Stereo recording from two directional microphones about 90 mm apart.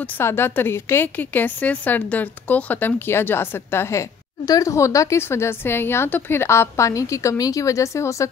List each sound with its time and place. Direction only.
0.0 s a woman's voice: 25° left (ahead or behind)